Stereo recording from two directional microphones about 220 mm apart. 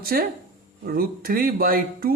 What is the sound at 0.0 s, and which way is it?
A man's voice, 45° right (ahead or behind).